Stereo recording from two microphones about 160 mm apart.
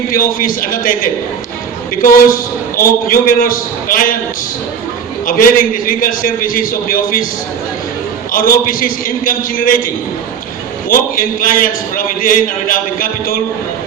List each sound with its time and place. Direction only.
0.1 s a man's voice: 60° left (ahead or behind)
5.2 s a man's voice: 60° left (ahead or behind)
8.3 s a man's voice: 60° left (ahead or behind)